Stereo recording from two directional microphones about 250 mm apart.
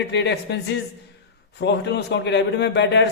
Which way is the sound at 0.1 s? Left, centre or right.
Left.